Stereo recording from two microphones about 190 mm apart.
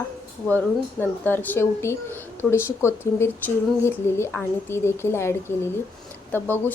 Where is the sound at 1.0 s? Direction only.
10° left (ahead or behind).